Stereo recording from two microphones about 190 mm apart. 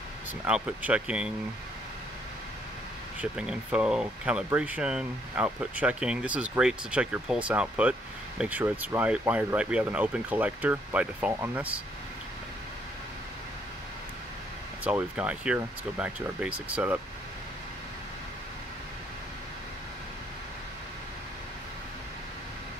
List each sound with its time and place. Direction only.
0.5 s speech: 5° right (ahead or behind)
3.2 s speech: 5° right (ahead or behind)
14.9 s speech: 5° right (ahead or behind)